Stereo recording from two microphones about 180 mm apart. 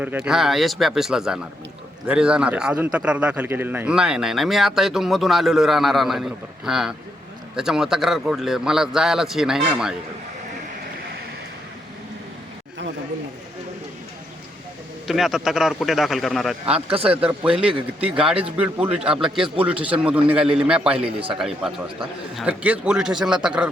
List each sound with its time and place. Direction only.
0.0 s a man's voice: 5° right (ahead or behind)
15.0 s a man's voice: centre (ahead or behind)